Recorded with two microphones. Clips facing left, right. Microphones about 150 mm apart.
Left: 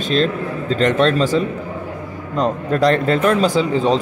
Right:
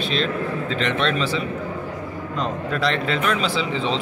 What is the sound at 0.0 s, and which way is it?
A man's voice, 45° left (ahead or behind).